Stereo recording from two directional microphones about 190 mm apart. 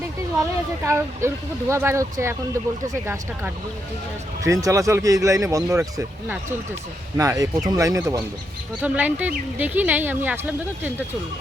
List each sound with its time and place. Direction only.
0.9 s speech: 15° right (ahead or behind)